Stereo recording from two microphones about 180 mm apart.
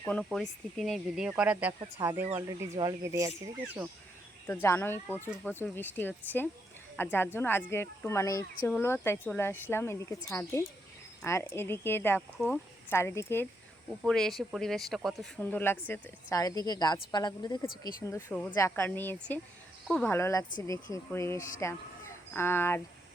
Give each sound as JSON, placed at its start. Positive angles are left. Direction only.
{"t": 0.0, "sound": "speech", "side_deg": 5}
{"t": 4.4, "sound": "speech", "side_deg": 15}
{"t": 14.0, "sound": "speech", "side_deg": 0}